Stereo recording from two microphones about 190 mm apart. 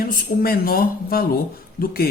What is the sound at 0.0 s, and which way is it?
Speech, 50° left (ahead or behind).